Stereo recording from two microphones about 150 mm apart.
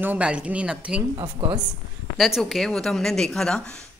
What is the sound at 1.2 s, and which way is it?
Speech, 35° right (ahead or behind).